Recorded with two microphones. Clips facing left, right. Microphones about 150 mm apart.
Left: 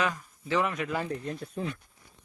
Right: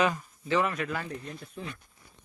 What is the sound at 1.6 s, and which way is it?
Speech, 45° left (ahead or behind).